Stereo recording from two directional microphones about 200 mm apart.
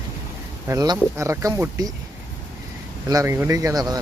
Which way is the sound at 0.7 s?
15° right (ahead or behind).